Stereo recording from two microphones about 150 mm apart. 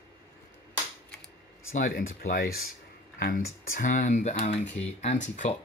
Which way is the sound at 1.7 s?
70° left (ahead or behind).